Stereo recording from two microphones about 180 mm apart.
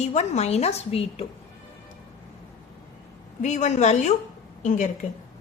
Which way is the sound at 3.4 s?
40° left (ahead or behind).